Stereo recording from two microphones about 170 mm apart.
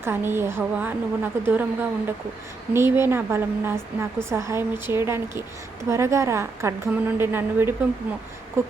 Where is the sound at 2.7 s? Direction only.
15° right (ahead or behind).